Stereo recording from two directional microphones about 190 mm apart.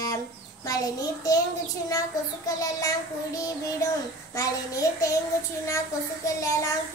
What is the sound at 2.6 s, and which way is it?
Child singing, 20° left (ahead or behind).